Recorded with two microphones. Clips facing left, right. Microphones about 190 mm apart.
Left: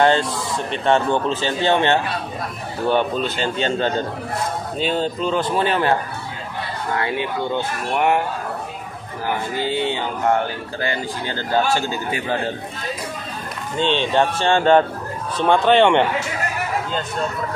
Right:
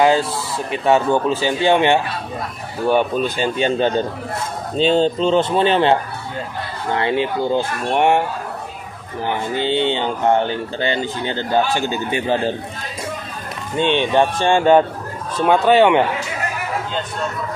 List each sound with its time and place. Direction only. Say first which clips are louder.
0.0 s speech: right 1 dB; 5° right (ahead or behind)
4.7 s speech: right 7 dB; 25° right (ahead or behind)
9.6 s speech: right 5 dB; 25° right (ahead or behind)
13.7 s speech: right 3 dB; 15° right (ahead or behind)